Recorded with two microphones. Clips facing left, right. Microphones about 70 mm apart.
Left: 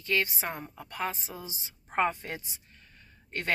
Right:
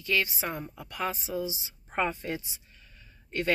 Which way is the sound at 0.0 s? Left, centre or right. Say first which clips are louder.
Right 1 dB; left.